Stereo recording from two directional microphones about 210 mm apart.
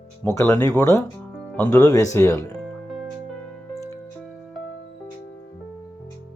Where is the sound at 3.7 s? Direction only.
15° left (ahead or behind).